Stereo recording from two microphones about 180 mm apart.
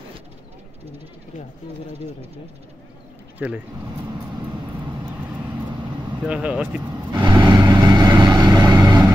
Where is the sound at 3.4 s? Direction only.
10° right (ahead or behind).